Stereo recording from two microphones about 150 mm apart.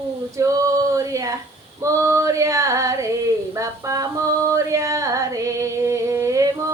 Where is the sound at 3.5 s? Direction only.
20° right (ahead or behind).